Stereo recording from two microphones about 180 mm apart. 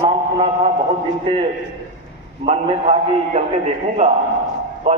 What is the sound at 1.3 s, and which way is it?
A man's voice, 25° right (ahead or behind).